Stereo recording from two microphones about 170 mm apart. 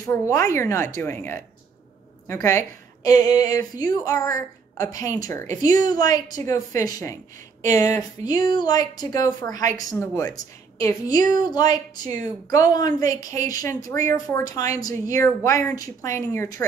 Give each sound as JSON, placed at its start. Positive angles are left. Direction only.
{"t": 0.0, "sound": "a woman's voice", "side_deg": 20}